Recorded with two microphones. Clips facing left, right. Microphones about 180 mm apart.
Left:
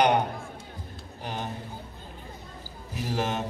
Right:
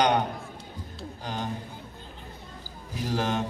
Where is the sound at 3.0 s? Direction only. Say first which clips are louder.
Right 1 dB; 10° left (ahead or behind).